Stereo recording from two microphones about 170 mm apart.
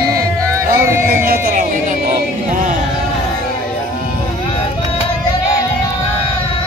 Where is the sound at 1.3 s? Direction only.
55° right (ahead or behind).